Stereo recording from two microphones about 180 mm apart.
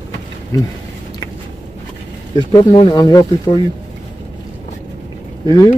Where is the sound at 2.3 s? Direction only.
25° left (ahead or behind).